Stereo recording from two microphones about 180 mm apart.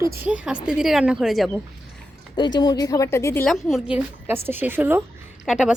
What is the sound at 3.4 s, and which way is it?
A woman's voice, centre (ahead or behind).